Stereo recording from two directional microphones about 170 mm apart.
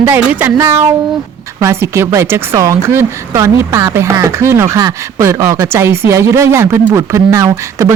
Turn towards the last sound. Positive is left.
turn(degrees=-20)  # may be behind; listen again after turning